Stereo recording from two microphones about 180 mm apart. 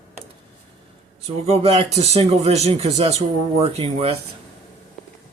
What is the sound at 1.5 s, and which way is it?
Speech, 35° right (ahead or behind).